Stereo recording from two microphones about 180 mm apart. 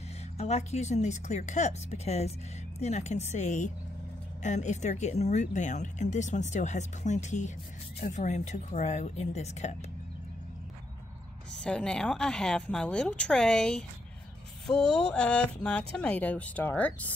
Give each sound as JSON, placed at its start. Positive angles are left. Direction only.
{"t": 0.4, "sound": "speech", "side_deg": 40}
{"t": 11.6, "sound": "a woman's voice", "side_deg": 5}